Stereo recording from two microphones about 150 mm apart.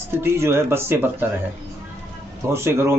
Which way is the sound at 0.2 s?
15° right (ahead or behind).